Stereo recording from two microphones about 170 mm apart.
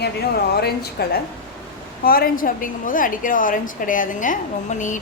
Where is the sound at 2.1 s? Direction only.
55° left (ahead or behind).